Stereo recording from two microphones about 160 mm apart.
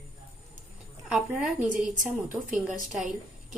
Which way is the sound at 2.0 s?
55° right (ahead or behind).